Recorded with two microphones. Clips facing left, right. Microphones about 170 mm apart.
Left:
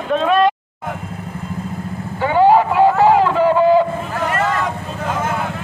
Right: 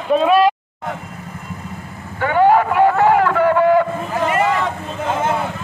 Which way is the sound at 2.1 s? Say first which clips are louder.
Left 1 dB; 15° left (ahead or behind).